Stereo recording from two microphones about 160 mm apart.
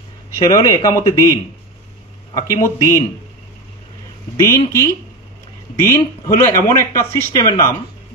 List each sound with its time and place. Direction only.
0.4 s speech: 25° left (ahead or behind)
4.4 s speech: 20° left (ahead or behind)